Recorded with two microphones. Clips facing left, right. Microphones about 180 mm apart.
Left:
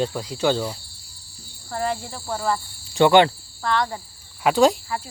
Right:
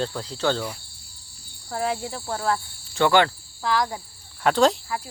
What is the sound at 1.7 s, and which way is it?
Speech, 5° right (ahead or behind).